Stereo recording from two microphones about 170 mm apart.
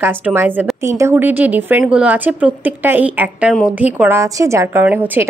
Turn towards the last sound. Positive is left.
turn(degrees=-10)  # may be behind; listen again after turning